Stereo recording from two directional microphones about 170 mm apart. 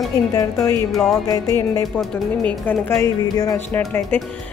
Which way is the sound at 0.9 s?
Centre (ahead or behind).